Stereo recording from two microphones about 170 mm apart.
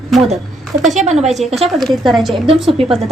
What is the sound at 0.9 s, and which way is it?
Speech, 40° right (ahead or behind).